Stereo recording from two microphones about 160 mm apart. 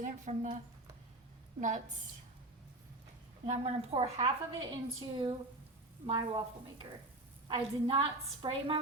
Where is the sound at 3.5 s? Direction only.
40° right (ahead or behind).